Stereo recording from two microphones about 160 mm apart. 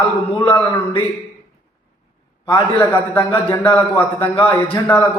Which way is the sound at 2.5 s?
30° left (ahead or behind).